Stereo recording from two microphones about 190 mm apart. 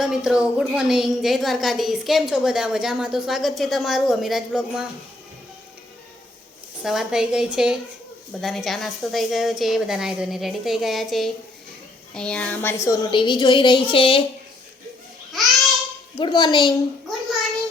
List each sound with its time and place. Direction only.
0.0 s a woman's voice: 5° right (ahead or behind)
6.8 s a woman's voice: centre (ahead or behind); by 14.3 s 30° left (ahead or behind)
16.1 s a woman's voice: 25° left (ahead or behind)